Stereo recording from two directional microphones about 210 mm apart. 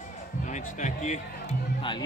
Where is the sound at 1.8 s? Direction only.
20° left (ahead or behind).